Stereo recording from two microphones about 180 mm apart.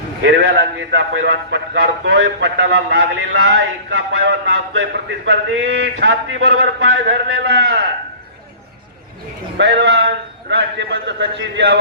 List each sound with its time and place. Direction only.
0.2 s a man's voice: 90° right; by 7.9 s 70° right (ahead or behind)
9.6 s a man's voice: 75° right (ahead or behind)